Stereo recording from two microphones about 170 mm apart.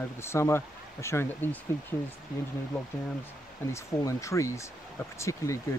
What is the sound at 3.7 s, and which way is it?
Speech, 20° left (ahead or behind).